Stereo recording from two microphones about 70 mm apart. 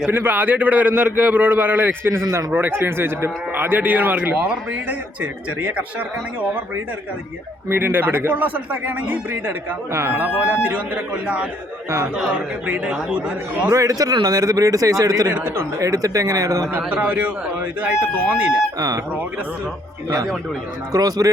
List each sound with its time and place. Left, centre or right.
0.1 s a man's voice: right
7.7 s a man's voice: right
9.9 s a man's voice: right; by 13.7 s centre
13.7 s a man's voice: right
15.3 s a man's voice: right
15.8 s speech: right
16.7 s a man's voice: right
18.8 s speech: right
20.9 s a man's voice: right